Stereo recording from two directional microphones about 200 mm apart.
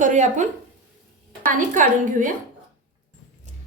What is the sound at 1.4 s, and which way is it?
Speech, 40° right (ahead or behind).